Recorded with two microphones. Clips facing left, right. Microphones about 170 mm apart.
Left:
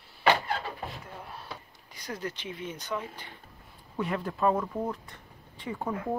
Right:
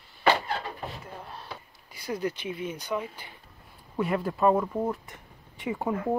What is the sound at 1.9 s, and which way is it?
Speech, 10° right (ahead or behind).